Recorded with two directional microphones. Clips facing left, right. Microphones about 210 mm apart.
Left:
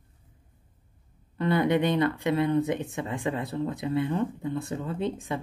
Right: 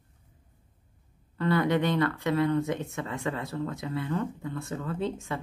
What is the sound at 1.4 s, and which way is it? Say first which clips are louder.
Speech: left 2 dB; 15° left (ahead or behind).